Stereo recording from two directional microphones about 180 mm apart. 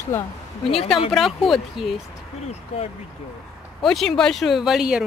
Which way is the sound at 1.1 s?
Centre (ahead or behind).